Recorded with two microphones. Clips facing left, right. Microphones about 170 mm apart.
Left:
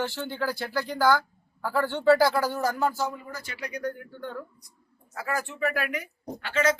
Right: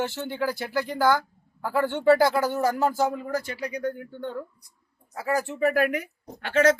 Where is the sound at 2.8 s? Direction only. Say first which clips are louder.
Right 3 dB; 50° right (ahead or behind).